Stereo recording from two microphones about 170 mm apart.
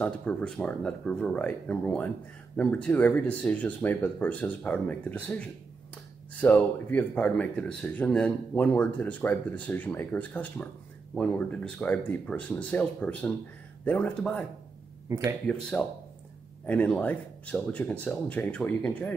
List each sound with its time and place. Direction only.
0.0 s speech: 5° left (ahead or behind)
15.0 s speech: 15° right (ahead or behind)
15.8 s speech: 10° left (ahead or behind)